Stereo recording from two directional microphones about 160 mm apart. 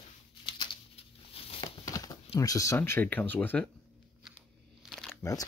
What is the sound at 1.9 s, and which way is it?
Speech, 20° left (ahead or behind).